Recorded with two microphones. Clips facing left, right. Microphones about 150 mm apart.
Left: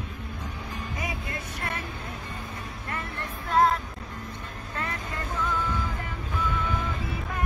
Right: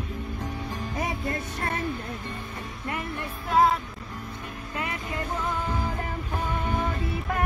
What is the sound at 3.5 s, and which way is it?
Music, 5° right (ahead or behind).